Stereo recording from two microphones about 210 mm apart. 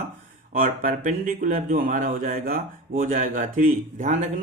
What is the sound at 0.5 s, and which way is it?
A man's voice, 40° right (ahead or behind).